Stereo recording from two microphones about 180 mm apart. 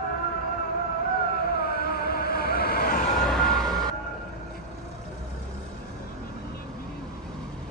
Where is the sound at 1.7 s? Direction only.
60° left (ahead or behind).